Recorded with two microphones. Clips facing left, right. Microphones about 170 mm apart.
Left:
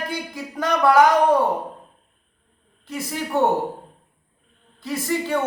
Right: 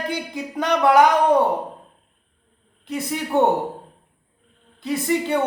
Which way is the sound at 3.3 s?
20° right (ahead or behind).